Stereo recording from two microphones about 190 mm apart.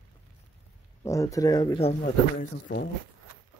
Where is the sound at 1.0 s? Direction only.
15° left (ahead or behind); by 2.1 s 30° left (ahead or behind).